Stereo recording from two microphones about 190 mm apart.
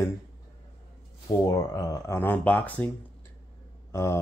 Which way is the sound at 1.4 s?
20° left (ahead or behind).